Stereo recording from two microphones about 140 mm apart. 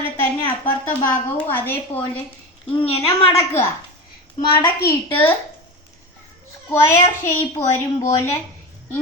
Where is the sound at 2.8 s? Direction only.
40° left (ahead or behind).